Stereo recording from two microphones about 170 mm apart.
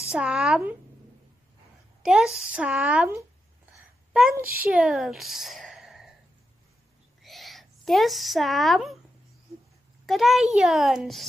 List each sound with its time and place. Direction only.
0.1 s a child's voice: 5° right (ahead or behind)
2.0 s a child's voice: 5° right (ahead or behind)
4.3 s a child's voice: 60° right (ahead or behind)
4.6 s a woman's voice: 5° right (ahead or behind)
7.2 s speech: centre (ahead or behind)
10.0 s a child's voice: centre (ahead or behind)